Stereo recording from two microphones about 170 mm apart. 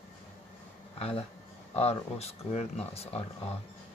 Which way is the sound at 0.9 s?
35° left (ahead or behind).